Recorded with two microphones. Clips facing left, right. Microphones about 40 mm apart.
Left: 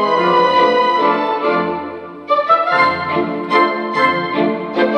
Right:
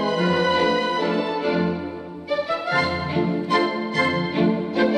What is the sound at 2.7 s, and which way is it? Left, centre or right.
Music, left.